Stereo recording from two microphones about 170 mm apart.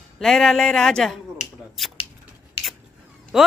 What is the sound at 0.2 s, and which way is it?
Speech, centre (ahead or behind).